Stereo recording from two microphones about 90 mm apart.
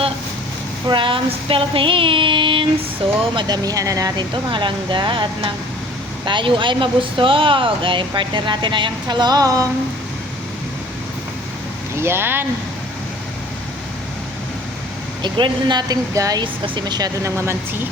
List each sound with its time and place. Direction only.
0.9 s speech: 70° right (ahead or behind)
3.3 s speech: 50° right (ahead or behind)
4.5 s speech: 65° right (ahead or behind); by 9.6 s 40° right (ahead or behind)
11.9 s speech: 25° right (ahead or behind)
15.2 s speech: 60° right (ahead or behind)
16.1 s speech: 40° right (ahead or behind)
16.4 s speech: 65° right (ahead or behind)
17.3 s speech: 30° right (ahead or behind)